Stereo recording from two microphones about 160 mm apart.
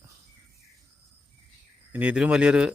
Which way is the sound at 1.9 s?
10° right (ahead or behind).